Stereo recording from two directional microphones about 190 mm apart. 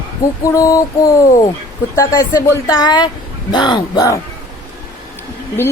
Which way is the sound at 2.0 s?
15° left (ahead or behind).